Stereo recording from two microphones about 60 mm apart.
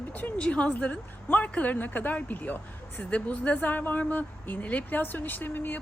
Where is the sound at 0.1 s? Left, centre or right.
Left.